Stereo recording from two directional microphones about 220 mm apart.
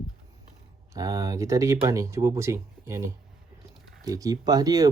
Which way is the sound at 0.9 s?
15° right (ahead or behind).